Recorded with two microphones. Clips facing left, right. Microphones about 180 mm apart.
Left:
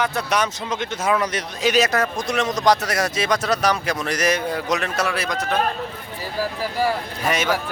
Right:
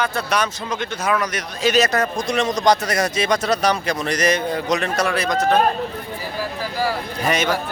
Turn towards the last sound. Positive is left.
turn(degrees=5)  # may be behind; listen again after turning